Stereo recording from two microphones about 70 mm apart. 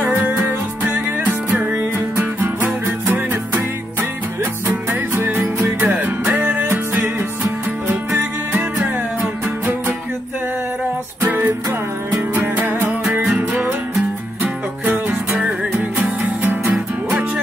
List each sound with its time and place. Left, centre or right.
0.1 s music: right
2.0 s music: right
4.6 s music: right
8.5 s music: right
11.2 s music: right
12.5 s music: right
14.4 s music: right
16.7 s music: centre